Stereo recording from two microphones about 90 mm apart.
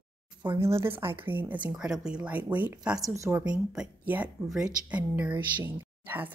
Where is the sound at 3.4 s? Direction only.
10° right (ahead or behind).